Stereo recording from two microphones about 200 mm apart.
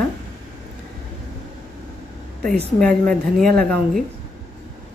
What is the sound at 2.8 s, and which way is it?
A woman's voice, 5° left (ahead or behind).